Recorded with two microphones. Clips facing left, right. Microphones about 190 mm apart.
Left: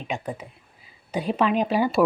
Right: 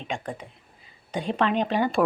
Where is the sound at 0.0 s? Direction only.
5° left (ahead or behind).